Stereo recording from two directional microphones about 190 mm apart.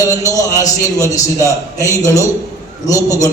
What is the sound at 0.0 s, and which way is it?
A man's voice, 15° left (ahead or behind).